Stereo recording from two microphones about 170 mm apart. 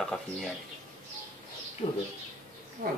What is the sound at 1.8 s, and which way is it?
Speech, 40° left (ahead or behind).